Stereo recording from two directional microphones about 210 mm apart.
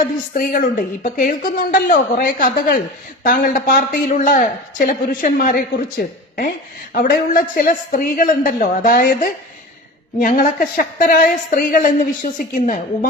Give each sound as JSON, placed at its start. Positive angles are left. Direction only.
{"t": 0.3, "sound": "a woman's voice", "side_deg": 40}
{"t": 6.9, "sound": "a woman's voice", "side_deg": 40}